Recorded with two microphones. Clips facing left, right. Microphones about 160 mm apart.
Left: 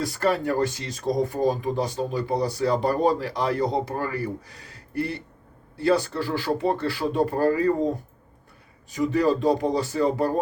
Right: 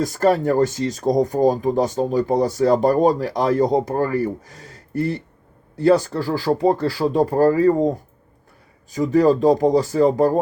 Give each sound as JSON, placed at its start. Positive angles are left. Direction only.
{"t": 0.0, "sound": "speech", "side_deg": -45}
{"t": 5.7, "sound": "speech", "side_deg": -45}
{"t": 9.0, "sound": "speech", "side_deg": -40}